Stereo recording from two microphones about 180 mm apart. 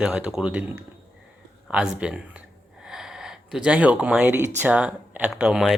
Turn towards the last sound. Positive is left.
turn(degrees=0)  # may be behind; listen again after turning